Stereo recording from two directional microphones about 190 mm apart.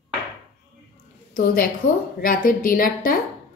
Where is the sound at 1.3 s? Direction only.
50° left (ahead or behind).